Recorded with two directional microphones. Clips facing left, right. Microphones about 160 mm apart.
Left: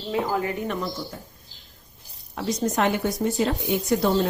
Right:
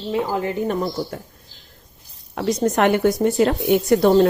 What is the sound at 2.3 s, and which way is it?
A woman's voice, 60° right (ahead or behind).